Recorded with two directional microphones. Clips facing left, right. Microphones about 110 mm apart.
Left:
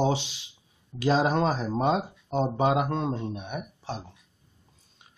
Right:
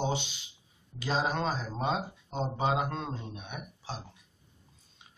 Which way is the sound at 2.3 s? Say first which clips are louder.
Left 6 dB; 65° left (ahead or behind).